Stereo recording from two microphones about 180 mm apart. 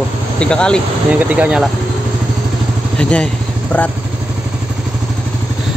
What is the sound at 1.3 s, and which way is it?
Speech, 5° right (ahead or behind).